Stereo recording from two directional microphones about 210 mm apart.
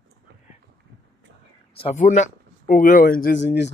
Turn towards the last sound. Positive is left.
turn(degrees=55)  # may be behind; listen again after turning